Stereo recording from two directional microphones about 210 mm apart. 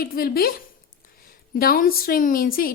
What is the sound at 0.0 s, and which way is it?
Speech, 45° left (ahead or behind).